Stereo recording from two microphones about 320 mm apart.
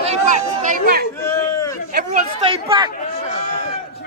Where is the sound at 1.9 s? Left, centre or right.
Right.